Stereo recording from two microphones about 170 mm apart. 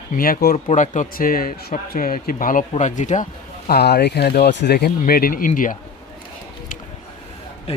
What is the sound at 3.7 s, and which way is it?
Speech, 70° left (ahead or behind).